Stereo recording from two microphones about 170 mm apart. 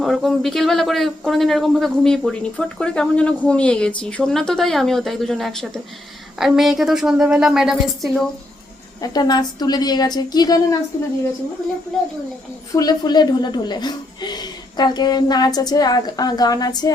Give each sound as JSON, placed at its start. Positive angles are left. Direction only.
{"t": 0.0, "sound": "a man's voice", "side_deg": 0}
{"t": 9.0, "sound": "a woman's voice", "side_deg": 25}
{"t": 11.9, "sound": "a man's voice", "side_deg": 0}
{"t": 12.7, "sound": "a woman's voice", "side_deg": 25}